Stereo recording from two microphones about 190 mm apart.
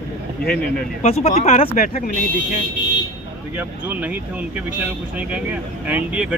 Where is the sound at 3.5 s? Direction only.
10° right (ahead or behind).